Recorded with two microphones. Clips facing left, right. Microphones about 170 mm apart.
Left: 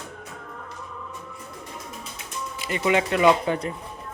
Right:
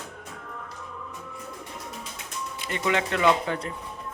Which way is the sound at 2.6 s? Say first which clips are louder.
Left 4 dB; 10° left (ahead or behind).